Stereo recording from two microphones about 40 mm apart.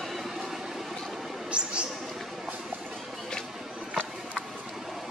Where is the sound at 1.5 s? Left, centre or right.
Right.